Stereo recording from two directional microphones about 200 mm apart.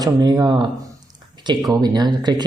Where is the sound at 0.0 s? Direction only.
20° right (ahead or behind).